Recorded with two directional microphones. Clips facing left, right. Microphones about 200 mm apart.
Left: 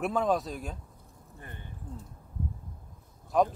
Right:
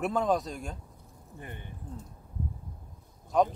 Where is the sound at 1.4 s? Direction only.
15° right (ahead or behind).